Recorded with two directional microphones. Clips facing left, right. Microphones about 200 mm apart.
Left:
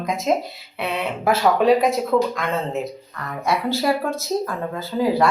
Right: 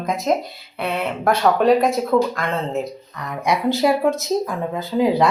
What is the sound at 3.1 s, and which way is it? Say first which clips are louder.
Speech: right 2 dB; 15° right (ahead or behind).